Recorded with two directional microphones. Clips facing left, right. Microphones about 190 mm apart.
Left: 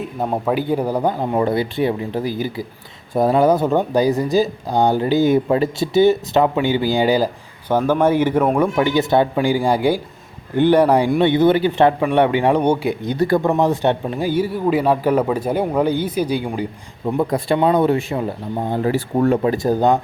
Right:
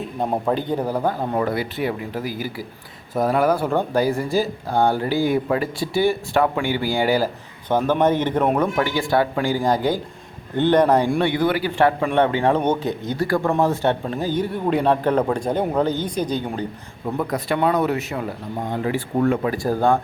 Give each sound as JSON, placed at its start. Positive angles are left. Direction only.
{"t": 0.0, "sound": "speech", "side_deg": 5}
{"t": 11.3, "sound": "speech", "side_deg": 25}
{"t": 17.1, "sound": "speech", "side_deg": 25}